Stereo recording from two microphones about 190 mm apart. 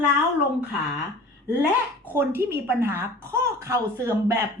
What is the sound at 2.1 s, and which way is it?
A woman's voice, 10° right (ahead or behind).